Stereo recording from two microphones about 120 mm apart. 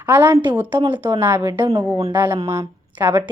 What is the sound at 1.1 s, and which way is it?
Speech, 30° right (ahead or behind).